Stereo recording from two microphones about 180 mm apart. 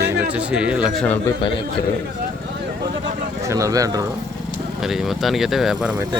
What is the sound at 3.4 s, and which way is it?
Speech, 20° right (ahead or behind).